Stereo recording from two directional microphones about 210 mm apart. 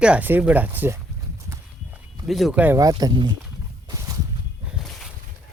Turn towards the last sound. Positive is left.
turn(degrees=0)  # may be behind; listen again after turning